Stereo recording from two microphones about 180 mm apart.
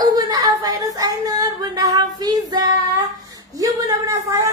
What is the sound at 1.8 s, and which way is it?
Child singing, 20° right (ahead or behind).